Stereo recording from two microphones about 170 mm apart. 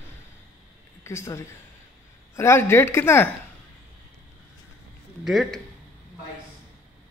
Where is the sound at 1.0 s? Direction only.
15° left (ahead or behind).